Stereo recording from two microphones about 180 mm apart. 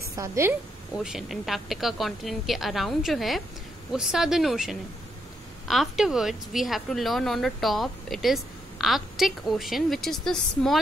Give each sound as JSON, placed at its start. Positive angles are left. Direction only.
{"t": 0.1, "sound": "a woman's voice", "side_deg": -15}
{"t": 0.9, "sound": "a woman's voice", "side_deg": 0}